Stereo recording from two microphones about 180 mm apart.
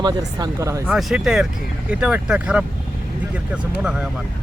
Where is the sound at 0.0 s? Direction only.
20° right (ahead or behind).